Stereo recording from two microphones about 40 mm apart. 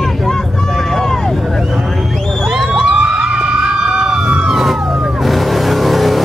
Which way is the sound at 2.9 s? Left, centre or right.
Right.